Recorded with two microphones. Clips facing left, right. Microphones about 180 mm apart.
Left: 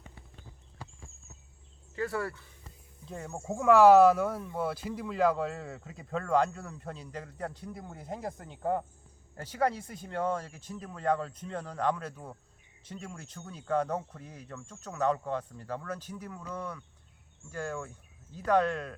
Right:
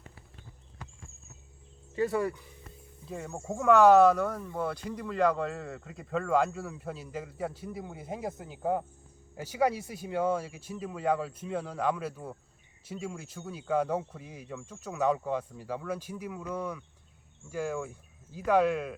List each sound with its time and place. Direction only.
2.0 s speech: 20° right (ahead or behind)
3.1 s speech: centre (ahead or behind)